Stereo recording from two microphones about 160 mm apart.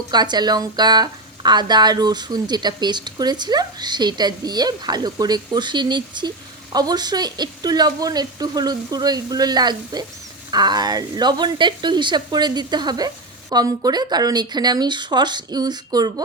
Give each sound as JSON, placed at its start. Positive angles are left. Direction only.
{"t": 0.1, "sound": "speech", "side_deg": -25}